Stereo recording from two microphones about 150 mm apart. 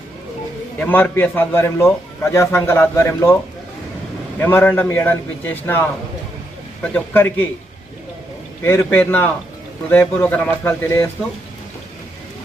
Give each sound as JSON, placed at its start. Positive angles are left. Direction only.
{"t": 0.8, "sound": "a man's voice", "side_deg": 10}
{"t": 4.4, "sound": "a man's voice", "side_deg": 15}
{"t": 6.8, "sound": "a man's voice", "side_deg": 10}
{"t": 8.6, "sound": "a man's voice", "side_deg": 15}